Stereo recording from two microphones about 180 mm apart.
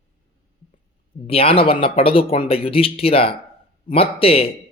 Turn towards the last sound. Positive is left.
turn(degrees=35)  # may be behind; listen again after turning